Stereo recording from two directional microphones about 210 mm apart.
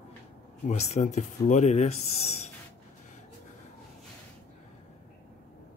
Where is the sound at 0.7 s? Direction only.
35° left (ahead or behind).